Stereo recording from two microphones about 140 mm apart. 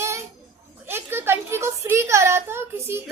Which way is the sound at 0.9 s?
15° right (ahead or behind).